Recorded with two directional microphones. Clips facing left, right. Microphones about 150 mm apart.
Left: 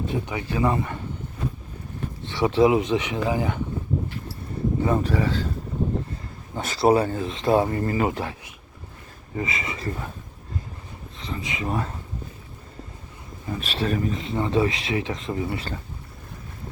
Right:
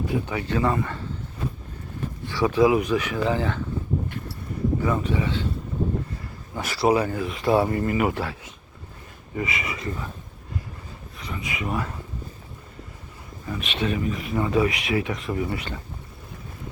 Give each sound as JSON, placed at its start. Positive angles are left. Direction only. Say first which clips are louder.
{"t": 0.0, "sound": "speech", "louder": "right 1 dB", "side_deg": 20}
{"t": 2.2, "sound": "speech", "louder": "left 1 dB", "side_deg": 25}
{"t": 4.8, "sound": "speech", "louder": "left 5 dB", "side_deg": 35}
{"t": 6.6, "sound": "speech", "louder": "left 2 dB", "side_deg": 25}
{"t": 8.1, "sound": "speech", "louder": "right 1 dB", "side_deg": 20}
{"t": 11.2, "sound": "speech", "louder": "left 1 dB", "side_deg": 25}
{"t": 13.5, "sound": "speech", "louder": "left 1 dB", "side_deg": 30}
{"t": 14.2, "sound": "speech", "louder": "right 2 dB", "side_deg": 25}